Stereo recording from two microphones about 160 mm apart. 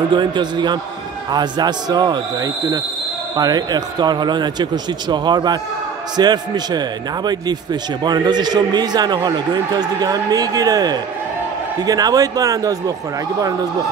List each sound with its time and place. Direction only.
0.1 s a man's voice: 30° right (ahead or behind)
8.0 s a man's voice: 25° right (ahead or behind)